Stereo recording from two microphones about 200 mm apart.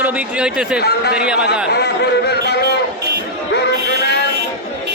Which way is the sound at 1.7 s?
55° left (ahead or behind).